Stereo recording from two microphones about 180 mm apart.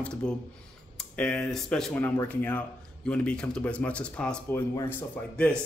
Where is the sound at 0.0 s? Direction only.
5° left (ahead or behind).